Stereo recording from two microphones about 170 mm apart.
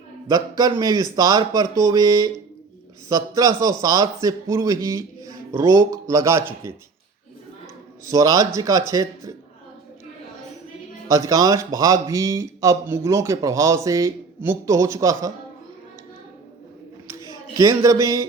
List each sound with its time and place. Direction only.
0.3 s speech: 20° right (ahead or behind)
8.0 s speech: 20° right (ahead or behind)
11.1 s speech: 20° right (ahead or behind)
17.1 s speech: 20° right (ahead or behind)